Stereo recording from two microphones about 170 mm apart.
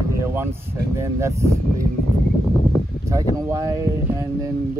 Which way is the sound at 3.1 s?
20° right (ahead or behind).